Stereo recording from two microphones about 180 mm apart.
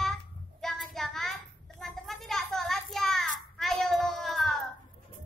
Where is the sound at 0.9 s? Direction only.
Centre (ahead or behind).